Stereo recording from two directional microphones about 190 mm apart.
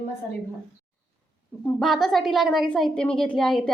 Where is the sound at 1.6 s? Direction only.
Centre (ahead or behind).